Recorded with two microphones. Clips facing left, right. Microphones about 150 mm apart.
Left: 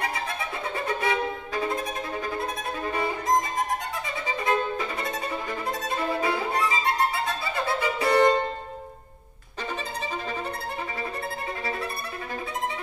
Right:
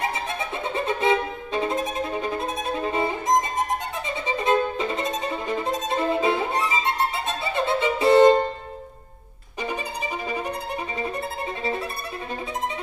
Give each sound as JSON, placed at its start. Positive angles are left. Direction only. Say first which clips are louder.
{"t": 0.7, "sound": "violin", "louder": "right 5 dB", "side_deg": -20}